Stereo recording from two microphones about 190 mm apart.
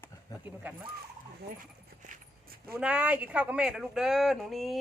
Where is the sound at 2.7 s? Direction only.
5° right (ahead or behind).